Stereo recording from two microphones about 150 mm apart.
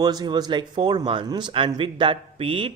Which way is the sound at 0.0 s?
25° right (ahead or behind).